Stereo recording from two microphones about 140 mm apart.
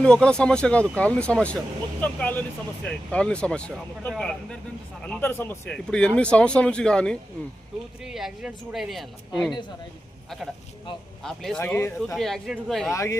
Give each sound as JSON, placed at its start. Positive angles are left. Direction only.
{"t": 0.0, "sound": "a man's voice", "side_deg": 5}
{"t": 11.2, "sound": "a man's voice", "side_deg": 5}
{"t": 11.6, "sound": "speech", "side_deg": 15}
{"t": 12.1, "sound": "a man's voice", "side_deg": 0}
{"t": 12.9, "sound": "speech", "side_deg": 20}